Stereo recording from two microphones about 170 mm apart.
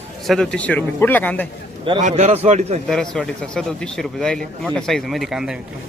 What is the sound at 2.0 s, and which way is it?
Speech, 45° right (ahead or behind).